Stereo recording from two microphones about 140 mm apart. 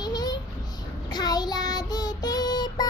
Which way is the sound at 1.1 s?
30° left (ahead or behind).